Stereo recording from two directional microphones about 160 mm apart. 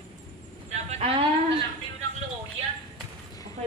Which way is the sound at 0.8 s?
45° right (ahead or behind).